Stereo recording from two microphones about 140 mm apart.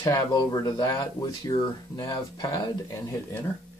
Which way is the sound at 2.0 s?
20° left (ahead or behind).